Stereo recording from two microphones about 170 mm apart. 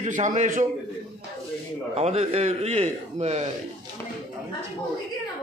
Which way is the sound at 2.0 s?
40° right (ahead or behind).